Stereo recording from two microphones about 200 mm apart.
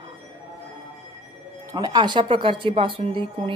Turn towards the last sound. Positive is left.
turn(degrees=-25)  # may be behind; listen again after turning